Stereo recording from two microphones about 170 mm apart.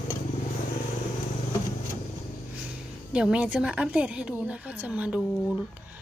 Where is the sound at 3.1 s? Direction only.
5° right (ahead or behind).